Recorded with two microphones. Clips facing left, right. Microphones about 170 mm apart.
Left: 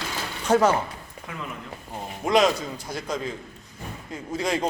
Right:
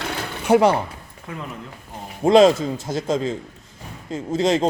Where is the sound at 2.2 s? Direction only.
25° right (ahead or behind).